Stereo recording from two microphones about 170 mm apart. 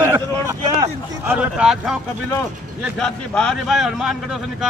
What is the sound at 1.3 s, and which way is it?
Speech, 5° right (ahead or behind).